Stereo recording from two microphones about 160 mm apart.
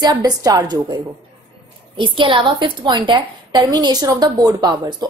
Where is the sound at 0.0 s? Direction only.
25° right (ahead or behind).